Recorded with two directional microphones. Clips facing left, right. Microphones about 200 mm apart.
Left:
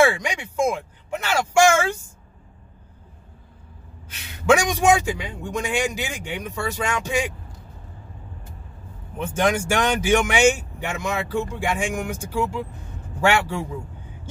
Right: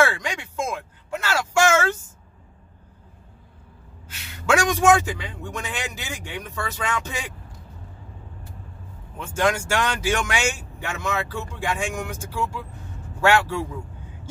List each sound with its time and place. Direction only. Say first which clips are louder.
0.0 s speech: left 3 dB; 15° left (ahead or behind)
4.5 s speech: left 1 dB; 15° left (ahead or behind)
9.2 s speech: left 2 dB; 20° left (ahead or behind)